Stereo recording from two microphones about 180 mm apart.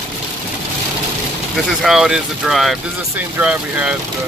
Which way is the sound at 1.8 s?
Centre (ahead or behind).